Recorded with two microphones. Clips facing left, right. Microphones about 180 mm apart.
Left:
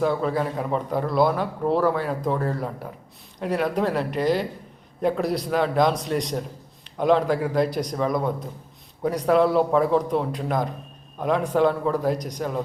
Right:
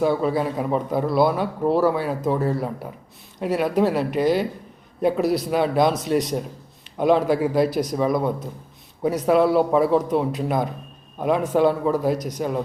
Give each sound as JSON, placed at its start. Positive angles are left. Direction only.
{"t": 0.1, "sound": "a man's voice", "side_deg": -5}
{"t": 12.4, "sound": "a man's voice", "side_deg": -15}